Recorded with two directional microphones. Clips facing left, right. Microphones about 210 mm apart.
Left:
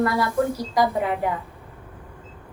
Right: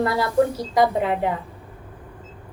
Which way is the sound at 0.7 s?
25° right (ahead or behind).